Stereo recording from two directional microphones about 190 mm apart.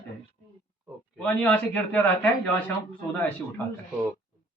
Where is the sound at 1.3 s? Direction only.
5° left (ahead or behind).